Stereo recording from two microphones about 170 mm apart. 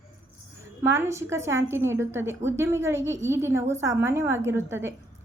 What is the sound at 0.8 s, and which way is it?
A woman's voice, 15° right (ahead or behind).